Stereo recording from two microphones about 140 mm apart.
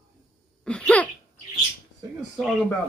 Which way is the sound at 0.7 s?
10° left (ahead or behind).